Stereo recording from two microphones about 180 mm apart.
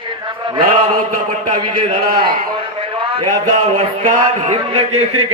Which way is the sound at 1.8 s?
25° right (ahead or behind).